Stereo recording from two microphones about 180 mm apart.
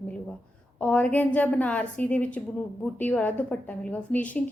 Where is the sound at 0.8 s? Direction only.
5° left (ahead or behind).